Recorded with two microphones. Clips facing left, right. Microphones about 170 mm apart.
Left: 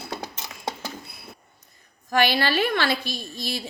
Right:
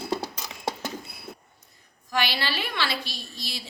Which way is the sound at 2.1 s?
50° left (ahead or behind).